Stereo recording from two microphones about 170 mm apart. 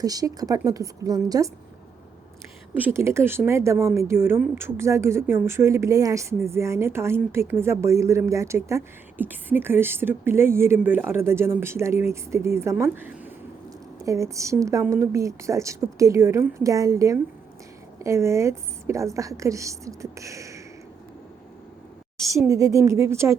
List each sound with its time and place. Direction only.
0.0 s a woman's voice: 20° right (ahead or behind)
2.8 s speech: 15° right (ahead or behind)
22.4 s speech: 20° right (ahead or behind)